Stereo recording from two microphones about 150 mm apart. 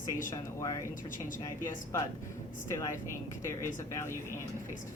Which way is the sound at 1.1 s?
60° left (ahead or behind).